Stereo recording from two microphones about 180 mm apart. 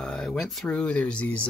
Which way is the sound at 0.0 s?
5° left (ahead or behind).